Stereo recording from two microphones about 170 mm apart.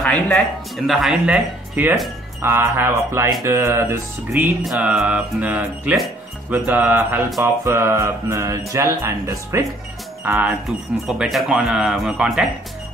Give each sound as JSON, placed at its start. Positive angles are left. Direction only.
{"t": 0.0, "sound": "speech", "side_deg": 5}